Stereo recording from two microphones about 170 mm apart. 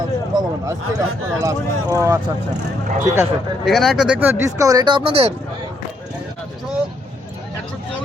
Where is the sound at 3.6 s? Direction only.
Centre (ahead or behind); by 5.3 s 35° right (ahead or behind).